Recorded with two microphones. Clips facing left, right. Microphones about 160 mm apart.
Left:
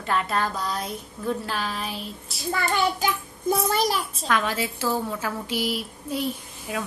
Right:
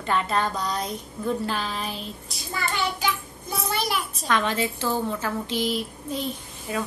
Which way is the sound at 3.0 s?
45° left (ahead or behind).